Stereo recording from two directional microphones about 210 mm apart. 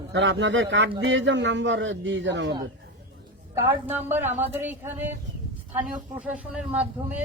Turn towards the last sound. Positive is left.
turn(degrees=-5)  # may be behind; listen again after turning